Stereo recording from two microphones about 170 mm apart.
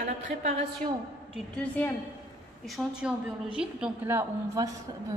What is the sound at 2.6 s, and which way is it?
A woman's voice, centre (ahead or behind).